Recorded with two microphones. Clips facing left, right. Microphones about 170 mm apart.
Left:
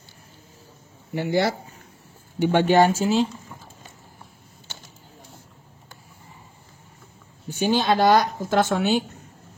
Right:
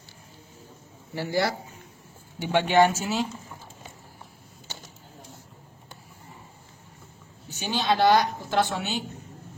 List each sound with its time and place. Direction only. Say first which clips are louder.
1.1 s speech: left 4 dB; 20° left (ahead or behind)
2.4 s speech: left 3 dB; 40° left (ahead or behind)
7.6 s a woman's voice: left 3 dB; 50° left (ahead or behind)